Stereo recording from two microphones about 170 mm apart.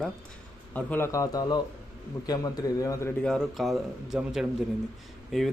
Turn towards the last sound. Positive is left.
turn(degrees=0)  # may be behind; listen again after turning